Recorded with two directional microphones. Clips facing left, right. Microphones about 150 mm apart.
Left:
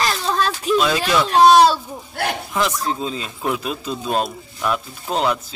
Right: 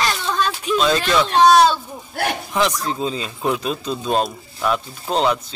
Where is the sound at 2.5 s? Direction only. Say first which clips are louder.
Right 1 dB; centre (ahead or behind).